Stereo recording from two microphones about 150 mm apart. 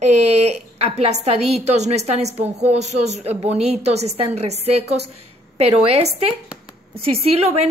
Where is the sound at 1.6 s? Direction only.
50° right (ahead or behind).